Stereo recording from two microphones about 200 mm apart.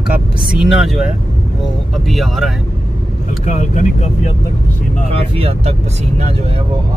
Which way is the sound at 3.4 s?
35° left (ahead or behind).